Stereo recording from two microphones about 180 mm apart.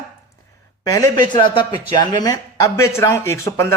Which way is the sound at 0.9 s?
20° left (ahead or behind).